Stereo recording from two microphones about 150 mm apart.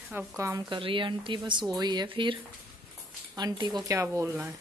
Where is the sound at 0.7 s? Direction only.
35° right (ahead or behind).